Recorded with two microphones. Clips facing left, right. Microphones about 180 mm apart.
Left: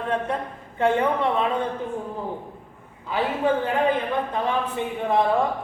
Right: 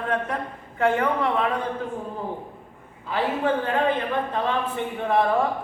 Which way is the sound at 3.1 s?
15° left (ahead or behind).